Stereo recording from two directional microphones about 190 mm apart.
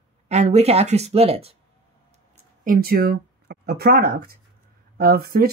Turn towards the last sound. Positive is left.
turn(degrees=-55)  # may be behind; listen again after turning